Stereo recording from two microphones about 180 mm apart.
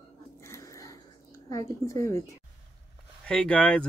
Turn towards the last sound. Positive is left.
turn(degrees=5)  # may be behind; listen again after turning